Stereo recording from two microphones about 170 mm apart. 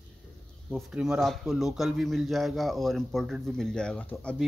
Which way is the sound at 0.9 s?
5° right (ahead or behind).